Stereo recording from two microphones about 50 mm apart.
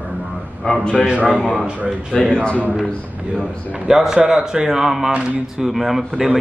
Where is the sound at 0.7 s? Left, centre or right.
Left.